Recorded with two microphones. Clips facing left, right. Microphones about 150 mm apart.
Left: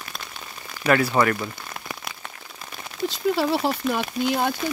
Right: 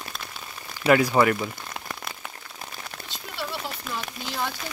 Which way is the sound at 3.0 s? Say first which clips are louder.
Left 15 dB; 90° left.